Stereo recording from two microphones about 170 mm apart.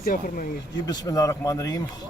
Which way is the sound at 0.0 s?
55° left (ahead or behind).